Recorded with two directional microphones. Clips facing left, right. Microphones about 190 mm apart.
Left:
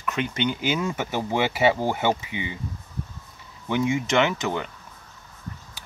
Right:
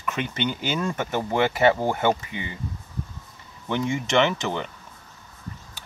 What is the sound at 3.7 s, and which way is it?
Speech, 5° left (ahead or behind).